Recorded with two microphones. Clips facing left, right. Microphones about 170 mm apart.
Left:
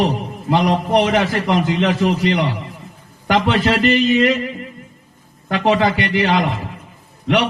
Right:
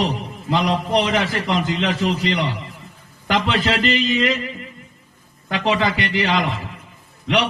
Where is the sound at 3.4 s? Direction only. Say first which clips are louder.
Left 5 dB; 55° left (ahead or behind).